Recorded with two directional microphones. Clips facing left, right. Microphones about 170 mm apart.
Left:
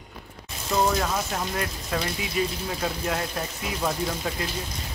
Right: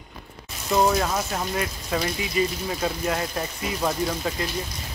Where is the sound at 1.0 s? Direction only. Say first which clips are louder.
Right 1 dB; 5° right (ahead or behind).